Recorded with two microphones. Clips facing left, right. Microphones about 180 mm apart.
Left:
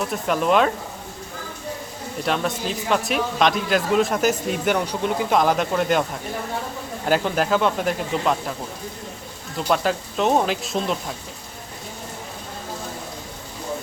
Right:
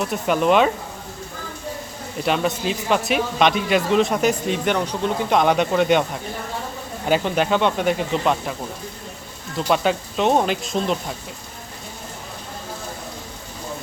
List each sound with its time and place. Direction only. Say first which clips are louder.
0.0 s speech: right 2 dB; centre (ahead or behind)
2.2 s speech: right 3 dB; centre (ahead or behind)
9.6 s speech: right 1 dB; centre (ahead or behind)